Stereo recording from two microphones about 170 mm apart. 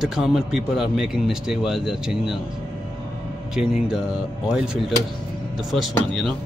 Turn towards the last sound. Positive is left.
turn(degrees=0)  # may be behind; listen again after turning